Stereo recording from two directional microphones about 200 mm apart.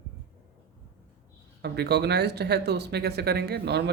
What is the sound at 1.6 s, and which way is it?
Speech, 55° right (ahead or behind).